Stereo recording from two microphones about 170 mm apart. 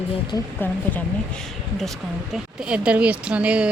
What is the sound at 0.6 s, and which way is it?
Speech, 10° left (ahead or behind).